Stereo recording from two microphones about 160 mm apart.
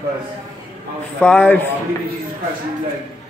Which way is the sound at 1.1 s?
10° left (ahead or behind).